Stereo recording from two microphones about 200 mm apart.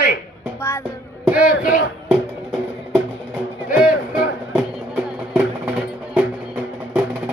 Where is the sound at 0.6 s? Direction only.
10° left (ahead or behind).